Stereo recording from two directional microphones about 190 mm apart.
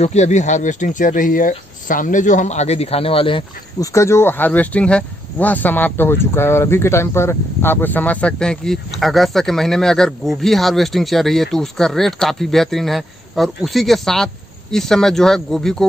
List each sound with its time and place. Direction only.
0.0 s speech: 35° left (ahead or behind)
3.9 s speech: 15° left (ahead or behind)